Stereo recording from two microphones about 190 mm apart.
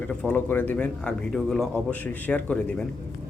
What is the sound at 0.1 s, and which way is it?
A man's voice, 5° left (ahead or behind).